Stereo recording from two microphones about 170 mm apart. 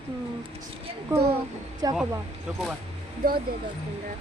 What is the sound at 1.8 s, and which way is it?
Speech, 20° right (ahead or behind).